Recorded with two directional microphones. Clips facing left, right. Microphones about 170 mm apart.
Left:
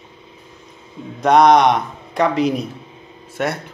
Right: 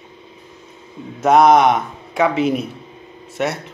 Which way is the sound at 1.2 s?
5° right (ahead or behind).